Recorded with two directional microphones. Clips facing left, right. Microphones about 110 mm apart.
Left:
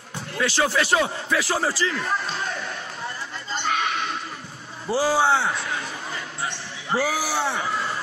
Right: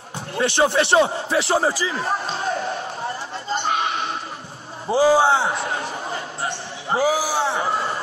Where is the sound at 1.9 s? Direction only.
35° right (ahead or behind).